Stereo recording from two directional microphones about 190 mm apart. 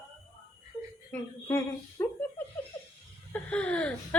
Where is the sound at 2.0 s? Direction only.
10° left (ahead or behind).